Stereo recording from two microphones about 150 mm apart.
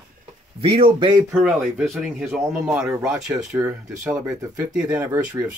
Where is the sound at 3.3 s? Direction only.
20° right (ahead or behind).